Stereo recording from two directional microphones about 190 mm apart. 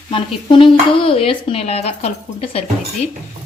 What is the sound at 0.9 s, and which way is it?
Speech, 30° left (ahead or behind).